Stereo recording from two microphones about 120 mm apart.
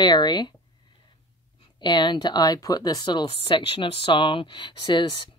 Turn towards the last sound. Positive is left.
turn(degrees=40)  # may be behind; listen again after turning